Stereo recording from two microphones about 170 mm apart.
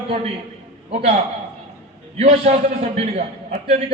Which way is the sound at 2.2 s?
40° right (ahead or behind).